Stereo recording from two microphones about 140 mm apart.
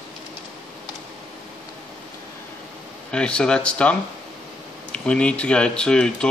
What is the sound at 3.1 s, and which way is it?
Speech, 5° left (ahead or behind).